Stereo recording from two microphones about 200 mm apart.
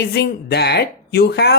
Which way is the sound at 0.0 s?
55° left (ahead or behind).